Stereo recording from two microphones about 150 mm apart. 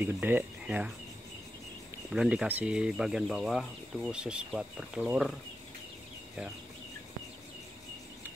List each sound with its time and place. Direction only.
0.0 s speech: 15° right (ahead or behind)
2.0 s speech: 5° right (ahead or behind)